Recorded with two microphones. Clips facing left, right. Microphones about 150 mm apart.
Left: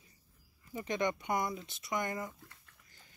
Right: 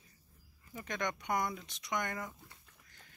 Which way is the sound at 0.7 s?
10° left (ahead or behind).